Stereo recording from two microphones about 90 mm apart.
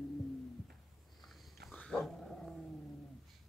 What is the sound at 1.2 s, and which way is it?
Sniff, centre (ahead or behind).